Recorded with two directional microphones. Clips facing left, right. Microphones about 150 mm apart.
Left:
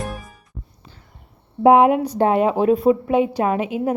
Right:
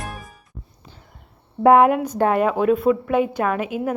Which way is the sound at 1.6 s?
20° left (ahead or behind).